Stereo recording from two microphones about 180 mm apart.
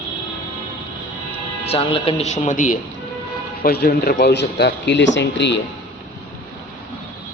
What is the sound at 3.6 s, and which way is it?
A man's voice, 60° left (ahead or behind).